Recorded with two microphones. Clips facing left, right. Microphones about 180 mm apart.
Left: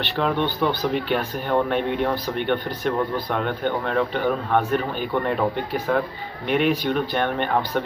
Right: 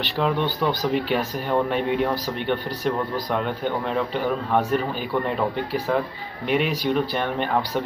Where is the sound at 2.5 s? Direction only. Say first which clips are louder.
Even; 35° right (ahead or behind).